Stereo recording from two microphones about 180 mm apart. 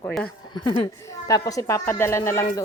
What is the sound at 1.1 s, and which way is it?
A child's voice, 20° left (ahead or behind).